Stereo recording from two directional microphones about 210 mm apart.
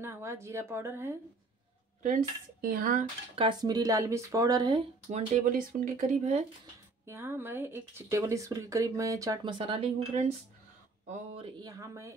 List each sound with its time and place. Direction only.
0.0 s speech: 10° right (ahead or behind)
2.0 s speech: 40° right (ahead or behind)
3.3 s speech: 20° right (ahead or behind)
5.1 s speech: 35° right (ahead or behind)
7.1 s speech: 10° right (ahead or behind)